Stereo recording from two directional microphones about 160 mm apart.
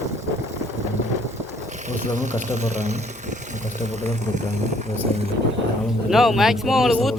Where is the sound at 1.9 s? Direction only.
50° right (ahead or behind).